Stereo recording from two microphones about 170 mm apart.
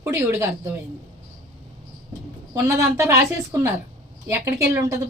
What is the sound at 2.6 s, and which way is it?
A woman's voice, 15° right (ahead or behind).